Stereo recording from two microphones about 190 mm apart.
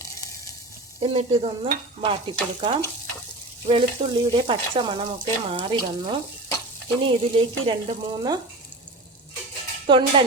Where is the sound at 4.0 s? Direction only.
25° right (ahead or behind).